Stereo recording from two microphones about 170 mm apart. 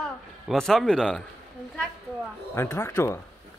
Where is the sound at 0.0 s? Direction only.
5° left (ahead or behind).